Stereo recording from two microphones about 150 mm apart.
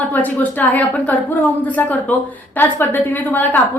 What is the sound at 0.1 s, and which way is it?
A woman's voice, 10° left (ahead or behind).